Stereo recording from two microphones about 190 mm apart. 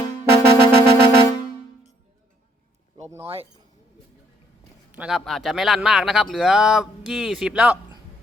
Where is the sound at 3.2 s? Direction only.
30° right (ahead or behind).